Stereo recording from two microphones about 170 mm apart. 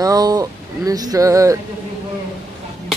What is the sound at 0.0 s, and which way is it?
Speech, 20° right (ahead or behind).